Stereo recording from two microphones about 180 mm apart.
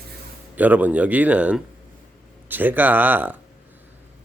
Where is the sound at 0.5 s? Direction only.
10° right (ahead or behind).